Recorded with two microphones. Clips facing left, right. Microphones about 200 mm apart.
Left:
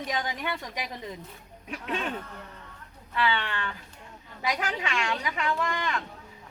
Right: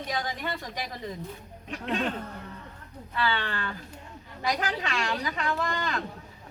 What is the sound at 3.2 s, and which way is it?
Speech, 35° right (ahead or behind).